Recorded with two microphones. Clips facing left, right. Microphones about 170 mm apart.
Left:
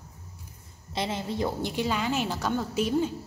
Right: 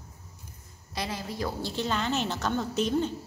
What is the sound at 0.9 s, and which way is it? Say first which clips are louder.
A woman's voice: left 4 dB; 25° left (ahead or behind).